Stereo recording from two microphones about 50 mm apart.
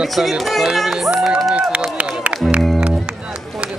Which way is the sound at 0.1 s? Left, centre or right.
Centre.